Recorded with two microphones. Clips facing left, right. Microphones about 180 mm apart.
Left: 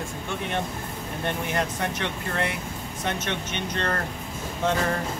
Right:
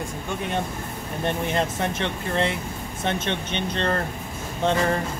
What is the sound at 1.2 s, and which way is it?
Speech, 25° right (ahead or behind).